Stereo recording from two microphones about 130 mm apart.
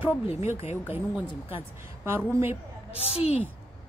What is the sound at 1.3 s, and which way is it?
Speech, 45° left (ahead or behind).